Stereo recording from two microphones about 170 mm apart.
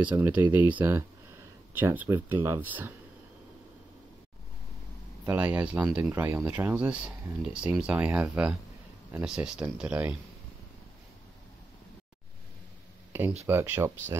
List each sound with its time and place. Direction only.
0.1 s speech: 10° right (ahead or behind)
5.2 s speech: 10° right (ahead or behind)
13.5 s speech: 15° right (ahead or behind)